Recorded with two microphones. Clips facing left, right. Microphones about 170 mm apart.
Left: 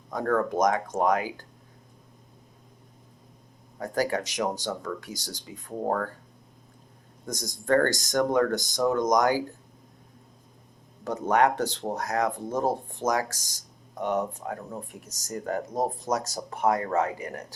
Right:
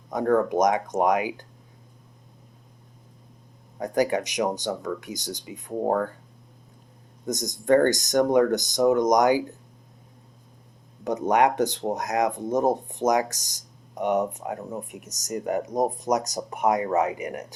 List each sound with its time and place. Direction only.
0.1 s speech: 20° right (ahead or behind)
3.8 s speech: 20° right (ahead or behind)
7.3 s speech: 20° right (ahead or behind)
11.0 s speech: 20° right (ahead or behind)